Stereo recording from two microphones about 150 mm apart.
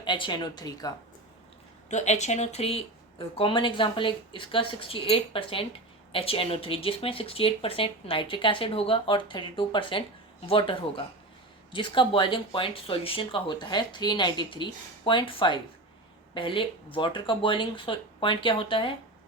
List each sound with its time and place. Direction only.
0.0 s speech: 30° left (ahead or behind)
1.9 s speech: 50° left (ahead or behind); by 18.9 s 35° left (ahead or behind)